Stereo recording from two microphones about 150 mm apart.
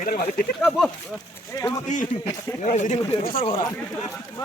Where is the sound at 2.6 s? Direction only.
50° left (ahead or behind).